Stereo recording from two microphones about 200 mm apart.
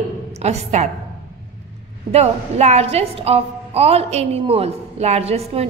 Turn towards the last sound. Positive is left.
turn(degrees=-30)  # may be behind; listen again after turning